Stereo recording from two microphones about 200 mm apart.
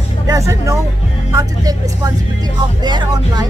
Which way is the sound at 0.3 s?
15° right (ahead or behind).